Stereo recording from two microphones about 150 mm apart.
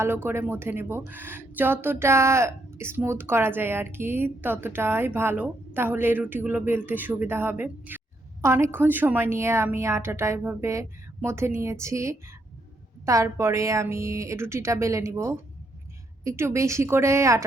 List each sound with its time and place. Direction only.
0.0 s speech: 15° right (ahead or behind)